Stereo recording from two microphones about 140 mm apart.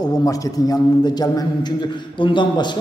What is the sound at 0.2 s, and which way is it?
A man's voice, 25° left (ahead or behind).